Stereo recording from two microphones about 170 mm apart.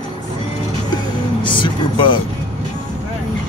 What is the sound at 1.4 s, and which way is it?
Speech, 30° left (ahead or behind).